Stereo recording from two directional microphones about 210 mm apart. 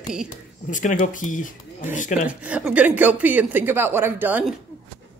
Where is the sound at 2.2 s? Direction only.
5° right (ahead or behind).